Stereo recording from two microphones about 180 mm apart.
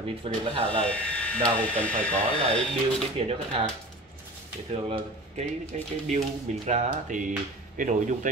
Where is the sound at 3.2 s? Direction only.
35° right (ahead or behind).